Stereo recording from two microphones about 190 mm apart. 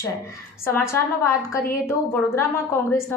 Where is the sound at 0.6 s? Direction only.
15° left (ahead or behind).